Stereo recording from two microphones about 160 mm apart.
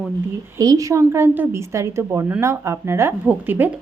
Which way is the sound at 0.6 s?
20° right (ahead or behind).